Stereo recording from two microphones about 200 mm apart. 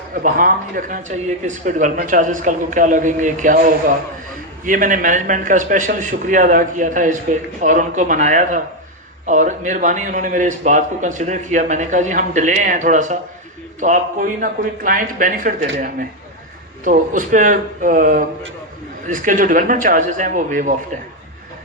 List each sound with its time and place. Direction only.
0.1 s a man's voice: 45° right (ahead or behind)
16.8 s a man's voice: 40° right (ahead or behind)